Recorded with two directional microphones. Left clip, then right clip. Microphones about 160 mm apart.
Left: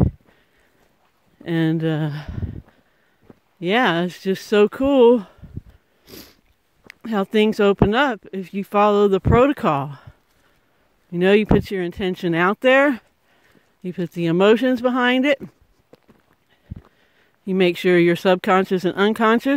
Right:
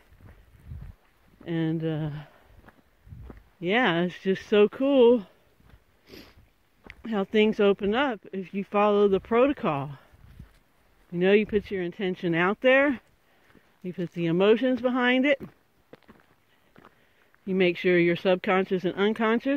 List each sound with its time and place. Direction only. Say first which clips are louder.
1.4 s speech: left 8 dB; 50° left (ahead or behind)
3.5 s speech: left 6 dB; 40° left (ahead or behind)
6.0 s cat: left 6 dB; 55° left (ahead or behind)
6.9 s speech: left 6 dB; 40° left (ahead or behind)
15.0 s speech: left 4 dB; 35° left (ahead or behind)
15.4 s a sound: left 5 dB; centre (ahead or behind)
17.5 s speech: left 6 dB; 45° left (ahead or behind)